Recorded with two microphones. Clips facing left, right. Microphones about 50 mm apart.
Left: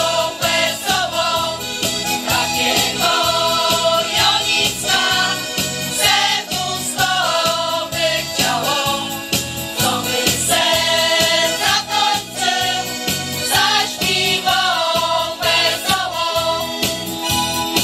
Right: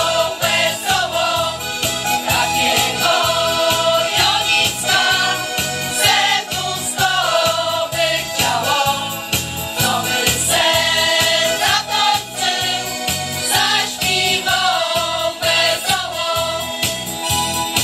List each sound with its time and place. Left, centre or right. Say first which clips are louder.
0.4 s music: right 1 dB; centre
7.0 s music: right 1 dB; right
8.8 s jingle bell: right 1 dB; right
10.1 s music: even; centre
13.5 s music: left 1 dB; centre